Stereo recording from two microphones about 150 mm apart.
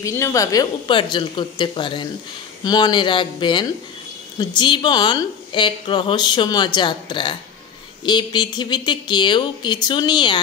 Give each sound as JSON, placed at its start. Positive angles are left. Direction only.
{"t": 0.0, "sound": "a woman's voice", "side_deg": 20}